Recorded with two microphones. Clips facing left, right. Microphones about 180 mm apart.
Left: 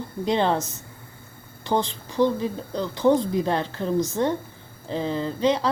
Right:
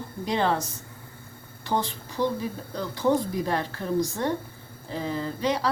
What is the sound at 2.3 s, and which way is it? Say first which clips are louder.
Speech: left 4 dB; 20° left (ahead or behind).